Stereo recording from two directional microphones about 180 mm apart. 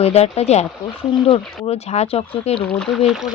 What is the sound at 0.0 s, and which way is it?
Speech, 35° left (ahead or behind).